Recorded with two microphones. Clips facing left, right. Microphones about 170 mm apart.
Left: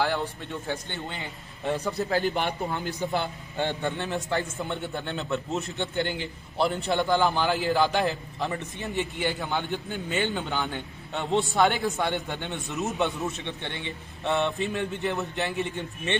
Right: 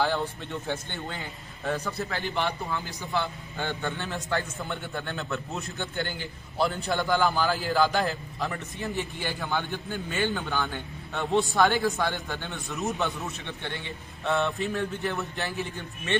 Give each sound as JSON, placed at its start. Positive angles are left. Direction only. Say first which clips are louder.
{"t": 0.7, "sound": "a man's voice", "louder": "left 1 dB", "side_deg": 20}
{"t": 2.0, "sound": "a man's voice", "louder": "left 4 dB", "side_deg": 40}
{"t": 3.5, "sound": "a man's voice", "louder": "left 4 dB", "side_deg": 25}